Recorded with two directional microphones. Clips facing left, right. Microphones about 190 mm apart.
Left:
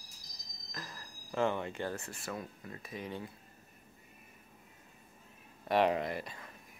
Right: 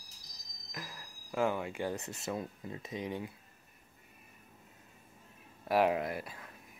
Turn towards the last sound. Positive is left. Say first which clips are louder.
# even
turn(degrees=-5)  # may be behind; listen again after turning